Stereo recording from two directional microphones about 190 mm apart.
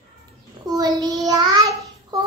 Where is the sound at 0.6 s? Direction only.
20° right (ahead or behind).